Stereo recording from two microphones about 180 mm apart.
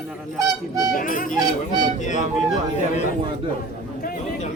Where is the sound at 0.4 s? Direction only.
20° right (ahead or behind).